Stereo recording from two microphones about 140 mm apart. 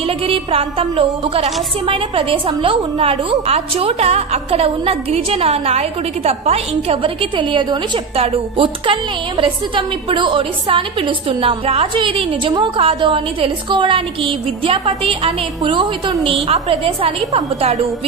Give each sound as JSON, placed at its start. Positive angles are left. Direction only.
{"t": 0.0, "sound": "a woman's voice", "side_deg": -45}